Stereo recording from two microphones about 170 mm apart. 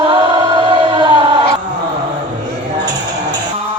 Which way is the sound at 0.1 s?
25° right (ahead or behind).